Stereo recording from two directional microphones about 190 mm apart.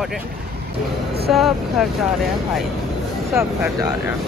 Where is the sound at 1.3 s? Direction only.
Centre (ahead or behind).